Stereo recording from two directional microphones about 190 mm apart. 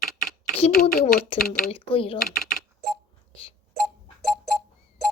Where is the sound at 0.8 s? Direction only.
40° left (ahead or behind).